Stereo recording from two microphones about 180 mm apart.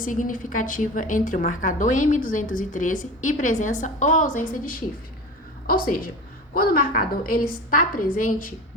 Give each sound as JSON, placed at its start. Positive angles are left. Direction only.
{"t": 0.0, "sound": "a woman's voice", "side_deg": 45}